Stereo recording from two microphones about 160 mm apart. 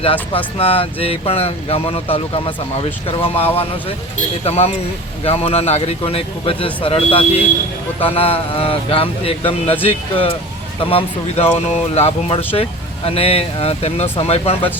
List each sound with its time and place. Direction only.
0.0 s speech: 35° left (ahead or behind)